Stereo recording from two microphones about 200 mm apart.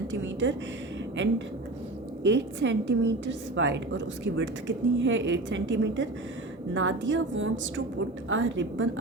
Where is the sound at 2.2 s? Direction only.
60° right (ahead or behind).